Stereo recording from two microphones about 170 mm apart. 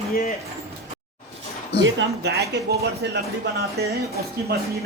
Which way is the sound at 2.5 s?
85° right.